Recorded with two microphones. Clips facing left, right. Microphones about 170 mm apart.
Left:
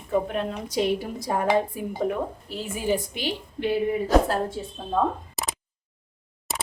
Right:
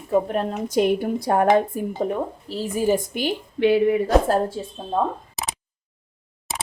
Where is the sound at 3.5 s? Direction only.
75° right (ahead or behind).